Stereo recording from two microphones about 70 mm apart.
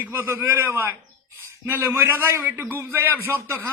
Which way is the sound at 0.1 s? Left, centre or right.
Right.